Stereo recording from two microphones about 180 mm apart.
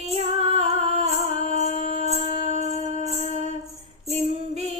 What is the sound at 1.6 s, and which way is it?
Music, 40° left (ahead or behind).